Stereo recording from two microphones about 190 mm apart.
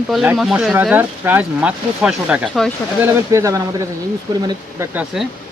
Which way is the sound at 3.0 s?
15° right (ahead or behind).